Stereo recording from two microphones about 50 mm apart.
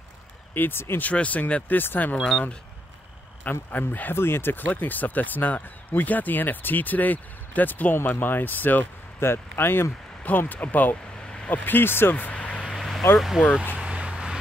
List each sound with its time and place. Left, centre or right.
0.6 s speech: left
1.1 s speech: left
2.1 s speech: centre
3.7 s speech: left
4.1 s speech: left
4.7 s speech: left
9.2 s speech: left
10.2 s speech: left
12.7 s vehicle: centre
13.7 s a sound: right